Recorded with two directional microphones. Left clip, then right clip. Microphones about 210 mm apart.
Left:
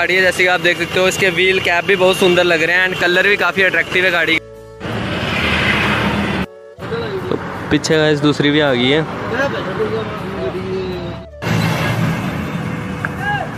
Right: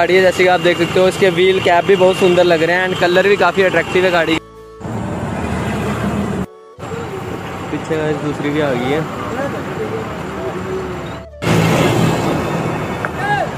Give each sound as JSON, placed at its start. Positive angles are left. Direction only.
{"t": 0.0, "sound": "speech", "side_deg": -10}
{"t": 7.9, "sound": "speech", "side_deg": 25}